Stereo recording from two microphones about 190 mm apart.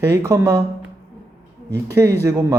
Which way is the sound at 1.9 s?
15° right (ahead or behind).